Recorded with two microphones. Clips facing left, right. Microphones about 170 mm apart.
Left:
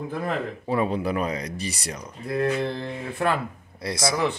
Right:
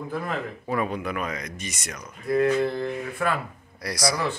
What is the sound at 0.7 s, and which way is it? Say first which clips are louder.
Speech: left 3 dB; 30° left (ahead or behind).